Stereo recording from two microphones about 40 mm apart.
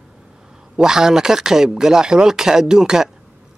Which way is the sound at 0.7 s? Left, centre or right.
Centre.